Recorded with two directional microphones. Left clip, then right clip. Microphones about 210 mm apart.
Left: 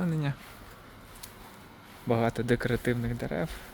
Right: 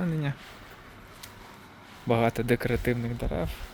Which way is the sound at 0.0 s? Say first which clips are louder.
Right 1 dB; 5° right (ahead or behind).